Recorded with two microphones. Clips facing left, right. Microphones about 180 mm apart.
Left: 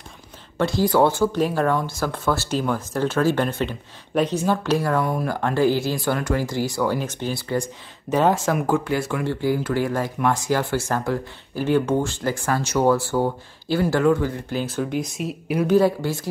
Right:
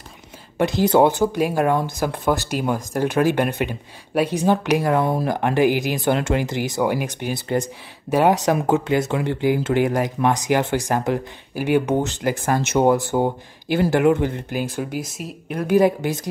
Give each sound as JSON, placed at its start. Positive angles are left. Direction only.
{"t": 0.6, "sound": "speech", "side_deg": -20}
{"t": 15.6, "sound": "speech", "side_deg": -15}